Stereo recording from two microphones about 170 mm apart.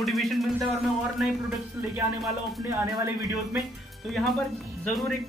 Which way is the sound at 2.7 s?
15° right (ahead or behind).